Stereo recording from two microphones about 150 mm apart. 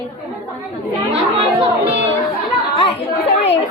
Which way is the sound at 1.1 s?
40° right (ahead or behind).